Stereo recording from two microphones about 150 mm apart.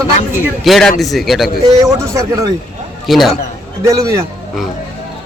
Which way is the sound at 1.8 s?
20° right (ahead or behind).